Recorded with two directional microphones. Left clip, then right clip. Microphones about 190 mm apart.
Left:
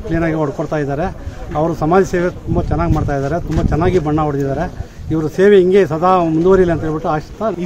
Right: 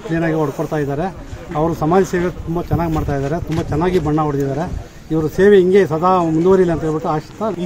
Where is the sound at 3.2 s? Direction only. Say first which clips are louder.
Left 2 dB; centre (ahead or behind).